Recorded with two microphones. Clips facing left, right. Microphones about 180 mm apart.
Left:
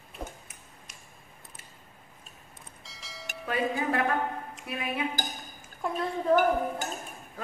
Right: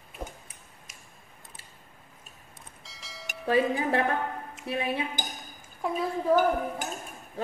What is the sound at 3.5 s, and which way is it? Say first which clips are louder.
A woman's voice: right 4 dB; 30° right (ahead or behind).